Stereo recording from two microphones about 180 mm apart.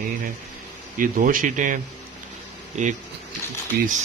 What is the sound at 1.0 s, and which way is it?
A man's voice, 50° right (ahead or behind).